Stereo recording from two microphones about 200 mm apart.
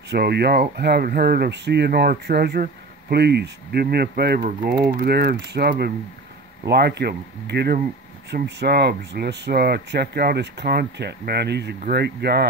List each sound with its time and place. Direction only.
0.1 s speech: 55° right (ahead or behind)